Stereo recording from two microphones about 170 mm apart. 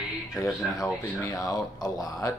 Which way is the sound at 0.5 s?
Centre (ahead or behind).